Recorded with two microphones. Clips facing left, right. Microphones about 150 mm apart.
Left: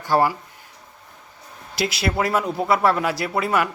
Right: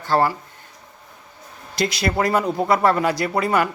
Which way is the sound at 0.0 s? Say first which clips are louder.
Even; 15° left (ahead or behind).